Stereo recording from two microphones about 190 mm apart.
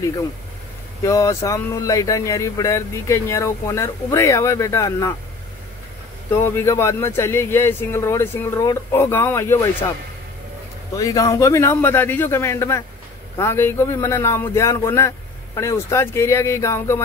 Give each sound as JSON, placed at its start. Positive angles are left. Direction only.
{"t": 1.0, "sound": "speech", "side_deg": 15}
{"t": 6.3, "sound": "speech", "side_deg": 15}
{"t": 11.0, "sound": "speech", "side_deg": 20}